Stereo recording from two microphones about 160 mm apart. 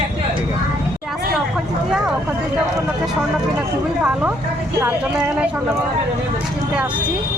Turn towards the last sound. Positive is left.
turn(degrees=-5)  # may be behind; listen again after turning